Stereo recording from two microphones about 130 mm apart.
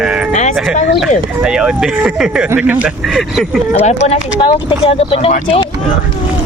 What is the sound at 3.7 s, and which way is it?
Speech, 60° left (ahead or behind).